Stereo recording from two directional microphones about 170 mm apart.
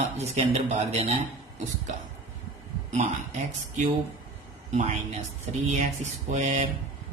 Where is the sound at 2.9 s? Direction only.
45° right (ahead or behind).